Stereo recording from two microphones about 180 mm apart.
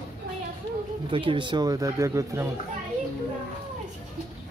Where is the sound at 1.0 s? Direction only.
30° right (ahead or behind).